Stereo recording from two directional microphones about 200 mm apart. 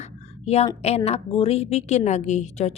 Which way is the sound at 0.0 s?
30° left (ahead or behind).